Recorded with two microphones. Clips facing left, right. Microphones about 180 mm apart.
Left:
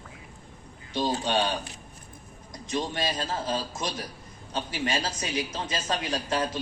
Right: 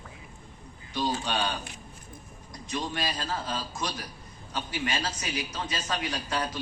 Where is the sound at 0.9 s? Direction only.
25° left (ahead or behind).